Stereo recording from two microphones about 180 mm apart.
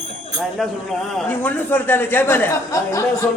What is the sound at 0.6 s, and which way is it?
A man's voice, centre (ahead or behind).